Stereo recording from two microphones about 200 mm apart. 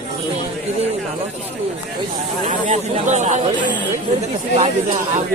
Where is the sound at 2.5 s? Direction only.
35° right (ahead or behind).